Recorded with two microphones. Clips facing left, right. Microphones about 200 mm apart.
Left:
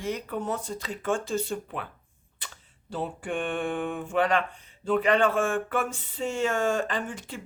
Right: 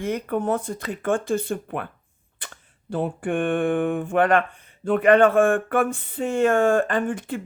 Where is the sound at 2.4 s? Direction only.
55° right (ahead or behind).